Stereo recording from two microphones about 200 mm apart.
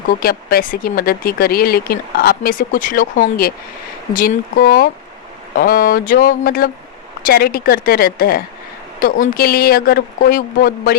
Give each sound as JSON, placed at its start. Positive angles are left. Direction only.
{"t": 0.2, "sound": "speech", "side_deg": 50}